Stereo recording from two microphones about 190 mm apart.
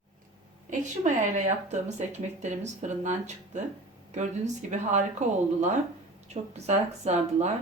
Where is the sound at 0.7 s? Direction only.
40° right (ahead or behind).